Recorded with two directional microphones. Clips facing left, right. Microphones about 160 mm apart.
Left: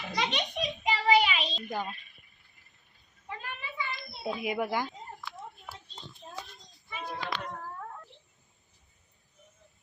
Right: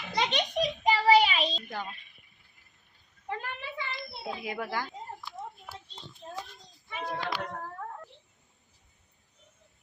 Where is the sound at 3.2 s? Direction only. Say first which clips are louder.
Right 4 dB; 60° right (ahead or behind).